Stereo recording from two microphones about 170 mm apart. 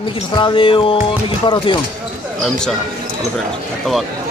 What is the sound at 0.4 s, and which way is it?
Speech, 30° left (ahead or behind).